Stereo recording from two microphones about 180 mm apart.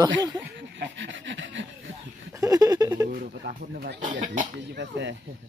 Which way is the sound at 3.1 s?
55° right (ahead or behind).